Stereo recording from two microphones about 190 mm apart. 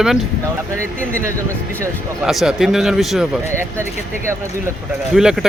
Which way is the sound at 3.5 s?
15° right (ahead or behind).